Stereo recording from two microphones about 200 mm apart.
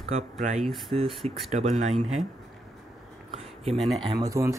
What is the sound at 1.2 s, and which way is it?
Speech, 30° right (ahead or behind).